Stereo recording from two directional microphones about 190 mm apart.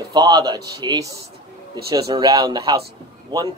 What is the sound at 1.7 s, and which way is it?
Speech, 20° right (ahead or behind).